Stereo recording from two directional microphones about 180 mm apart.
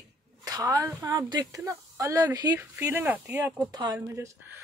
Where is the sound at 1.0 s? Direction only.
20° right (ahead or behind).